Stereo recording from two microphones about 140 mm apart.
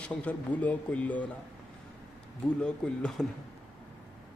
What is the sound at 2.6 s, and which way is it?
Speech, 5° left (ahead or behind).